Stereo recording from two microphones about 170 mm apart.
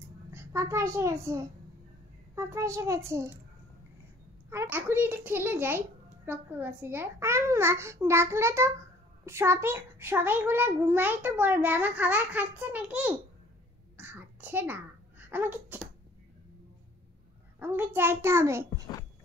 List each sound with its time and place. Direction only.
0.3 s a woman's voice: 15° right (ahead or behind)
4.5 s a child's voice: 15° right (ahead or behind)
13.9 s babbling: 10° right (ahead or behind)
17.6 s a child's voice: 10° right (ahead or behind)